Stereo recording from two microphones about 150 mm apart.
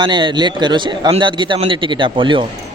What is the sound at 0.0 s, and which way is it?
A man's voice, 30° right (ahead or behind).